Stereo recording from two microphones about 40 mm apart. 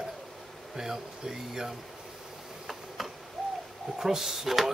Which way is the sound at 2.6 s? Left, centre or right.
Centre.